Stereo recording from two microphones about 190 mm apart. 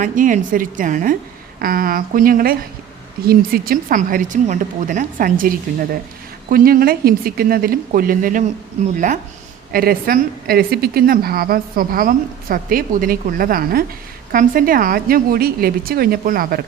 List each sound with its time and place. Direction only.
0.0 s a woman's voice: 45° right (ahead or behind)